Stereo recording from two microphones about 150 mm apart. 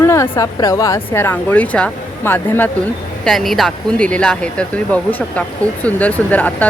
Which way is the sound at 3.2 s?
Centre (ahead or behind).